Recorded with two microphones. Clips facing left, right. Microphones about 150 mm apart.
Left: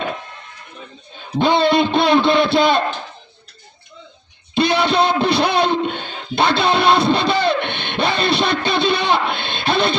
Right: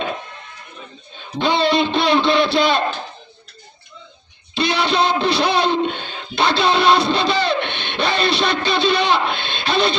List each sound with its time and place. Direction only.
1.4 s a man's voice: 50° left (ahead or behind)
4.5 s music: 50° left (ahead or behind)